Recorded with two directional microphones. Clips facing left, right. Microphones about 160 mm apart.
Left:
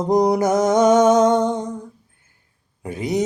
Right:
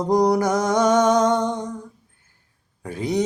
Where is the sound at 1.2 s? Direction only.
5° left (ahead or behind).